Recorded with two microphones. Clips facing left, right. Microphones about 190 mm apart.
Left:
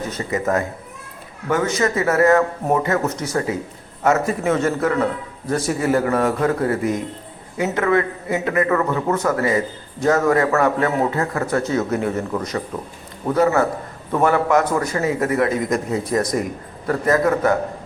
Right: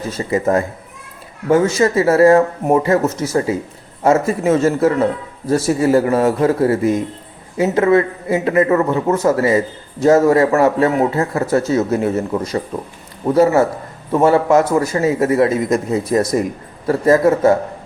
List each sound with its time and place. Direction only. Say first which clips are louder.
0.1 s a man's voice: right 6 dB; 30° right (ahead or behind)